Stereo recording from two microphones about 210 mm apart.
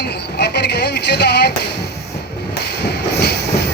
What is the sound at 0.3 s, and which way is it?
Music, 50° left (ahead or behind).